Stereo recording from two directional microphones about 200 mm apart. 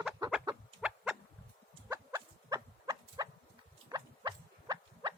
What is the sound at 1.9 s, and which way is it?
Livestock, 15° right (ahead or behind).